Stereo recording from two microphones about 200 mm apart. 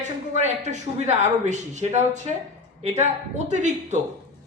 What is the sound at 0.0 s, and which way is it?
Speech, 35° right (ahead or behind).